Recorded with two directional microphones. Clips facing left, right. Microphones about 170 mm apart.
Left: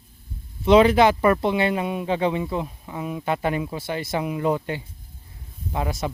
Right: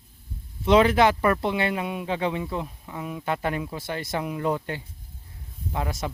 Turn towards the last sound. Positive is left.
turn(degrees=15)  # may be behind; listen again after turning